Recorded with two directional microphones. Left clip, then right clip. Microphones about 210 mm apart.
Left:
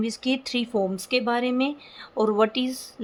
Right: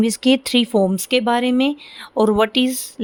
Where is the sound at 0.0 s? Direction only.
45° right (ahead or behind).